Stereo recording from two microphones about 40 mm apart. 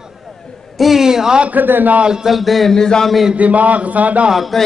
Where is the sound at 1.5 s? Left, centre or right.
Right.